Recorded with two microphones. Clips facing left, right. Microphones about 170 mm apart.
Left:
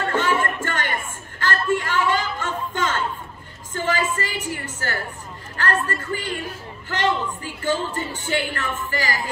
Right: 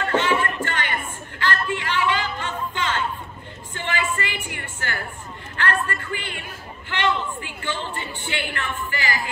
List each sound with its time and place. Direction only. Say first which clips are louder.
0.0 s music: even; 45° left (ahead or behind)
1.4 s a sound: left 3 dB; 45° left (ahead or behind)
6.9 s a woman's voice: left 1 dB; 40° left (ahead or behind)